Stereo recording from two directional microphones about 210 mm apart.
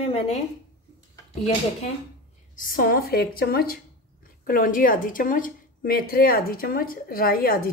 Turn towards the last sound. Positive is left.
turn(degrees=45)  # may be behind; listen again after turning